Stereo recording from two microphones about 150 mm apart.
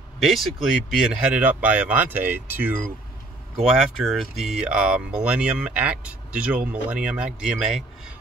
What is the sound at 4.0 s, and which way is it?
Speech, 5° right (ahead or behind).